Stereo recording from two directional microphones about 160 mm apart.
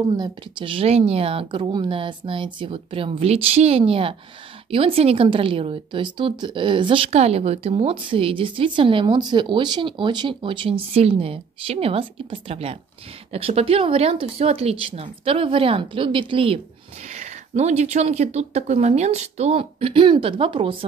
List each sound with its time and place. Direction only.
0.2 s a woman's voice: 30° right (ahead or behind)
17.1 s speech: 45° right (ahead or behind)